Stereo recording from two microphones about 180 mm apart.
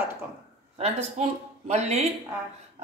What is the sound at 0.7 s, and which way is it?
Speech, 35° right (ahead or behind).